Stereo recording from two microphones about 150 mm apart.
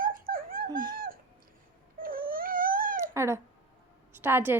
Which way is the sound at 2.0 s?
70° right (ahead or behind).